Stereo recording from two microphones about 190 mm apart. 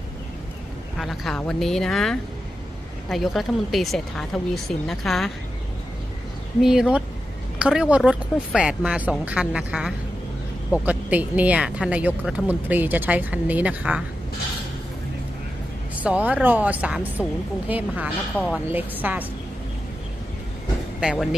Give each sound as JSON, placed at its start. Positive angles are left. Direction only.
{"t": 0.9, "sound": "speech", "side_deg": 0}
{"t": 6.6, "sound": "speech", "side_deg": -5}
{"t": 16.0, "sound": "speech", "side_deg": -10}
{"t": 21.0, "sound": "speech", "side_deg": 0}